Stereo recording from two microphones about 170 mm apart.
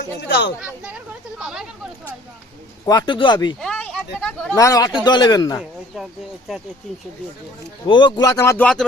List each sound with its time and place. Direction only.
0.2 s speech: 90° left
0.6 s speech: 5° right (ahead or behind)
2.8 s speech: 25° left (ahead or behind)
3.6 s a sound: 5° left (ahead or behind)
4.5 s speech: 20° left (ahead or behind)
7.9 s speech: 25° left (ahead or behind); by 8.8 s 10° left (ahead or behind)